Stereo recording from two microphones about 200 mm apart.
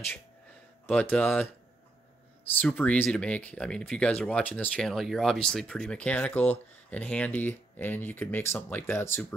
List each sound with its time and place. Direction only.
0.8 s speech: 5° left (ahead or behind)
2.6 s speech: 5° left (ahead or behind)